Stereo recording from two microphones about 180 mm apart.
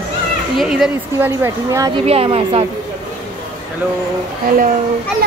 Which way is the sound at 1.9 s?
35° right (ahead or behind).